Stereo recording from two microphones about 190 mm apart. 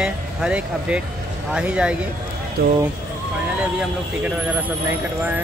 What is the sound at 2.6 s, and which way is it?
Speech, 55° right (ahead or behind).